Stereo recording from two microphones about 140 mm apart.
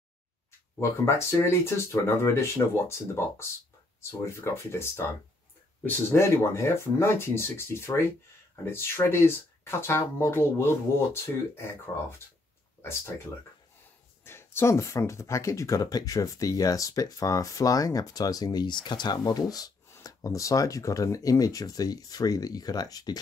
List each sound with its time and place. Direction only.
0.7 s speech: 20° left (ahead or behind)
14.2 s speech: 15° left (ahead or behind)